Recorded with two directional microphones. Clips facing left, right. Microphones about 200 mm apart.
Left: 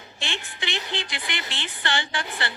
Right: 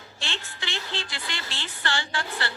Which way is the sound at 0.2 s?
15° left (ahead or behind).